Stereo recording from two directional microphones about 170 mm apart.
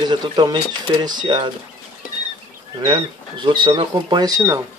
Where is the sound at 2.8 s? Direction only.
25° right (ahead or behind).